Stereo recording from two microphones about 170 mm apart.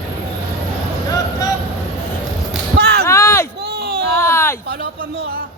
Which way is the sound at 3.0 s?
15° left (ahead or behind).